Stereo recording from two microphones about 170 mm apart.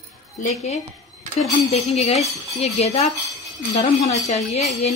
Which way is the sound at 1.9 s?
40° left (ahead or behind).